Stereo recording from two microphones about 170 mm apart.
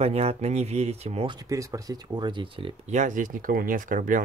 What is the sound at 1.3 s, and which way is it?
Speech, 20° right (ahead or behind).